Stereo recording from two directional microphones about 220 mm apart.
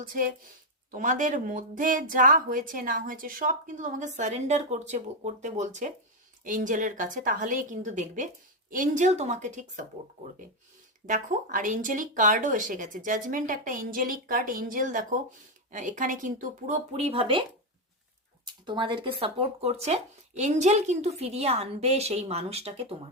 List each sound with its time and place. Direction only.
0.0 s speech: 40° right (ahead or behind)
11.0 s speech: 35° right (ahead or behind)
18.4 s speech: 20° right (ahead or behind)